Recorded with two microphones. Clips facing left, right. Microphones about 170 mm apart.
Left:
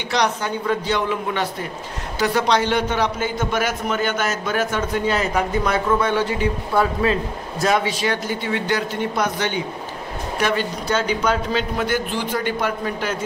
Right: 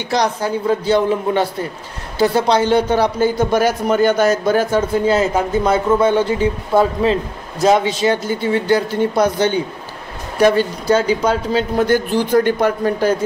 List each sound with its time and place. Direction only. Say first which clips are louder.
0.1 s a man's voice: right 4 dB; 35° right (ahead or behind)